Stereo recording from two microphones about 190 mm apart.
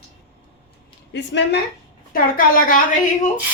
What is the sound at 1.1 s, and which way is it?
Speech, 65° left (ahead or behind).